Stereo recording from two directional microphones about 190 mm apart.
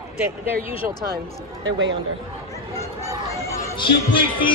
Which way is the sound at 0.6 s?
30° left (ahead or behind).